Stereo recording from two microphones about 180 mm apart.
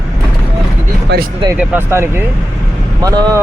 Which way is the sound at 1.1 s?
70° right (ahead or behind).